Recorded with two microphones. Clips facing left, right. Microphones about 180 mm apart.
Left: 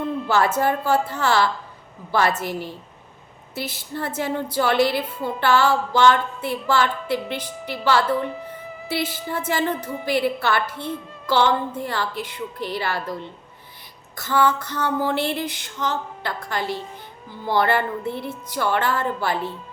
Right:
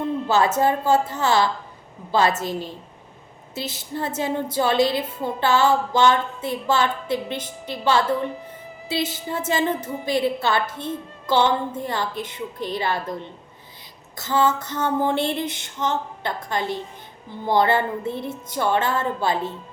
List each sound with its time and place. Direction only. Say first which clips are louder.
0.3 s a woman's voice: right 1 dB; 20° right (ahead or behind)